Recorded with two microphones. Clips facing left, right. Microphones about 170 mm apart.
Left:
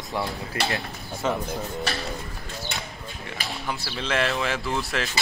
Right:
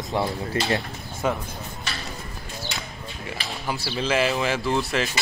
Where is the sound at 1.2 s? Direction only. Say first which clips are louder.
Right 1 dB; 10° right (ahead or behind).